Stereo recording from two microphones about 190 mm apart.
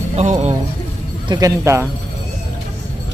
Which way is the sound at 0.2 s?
35° right (ahead or behind).